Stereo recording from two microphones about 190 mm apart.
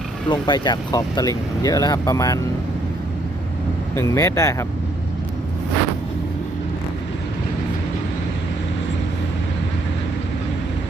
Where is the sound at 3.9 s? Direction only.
15° left (ahead or behind).